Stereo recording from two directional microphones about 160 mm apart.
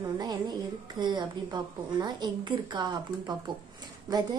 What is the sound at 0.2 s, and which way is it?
A woman's voice, 25° right (ahead or behind).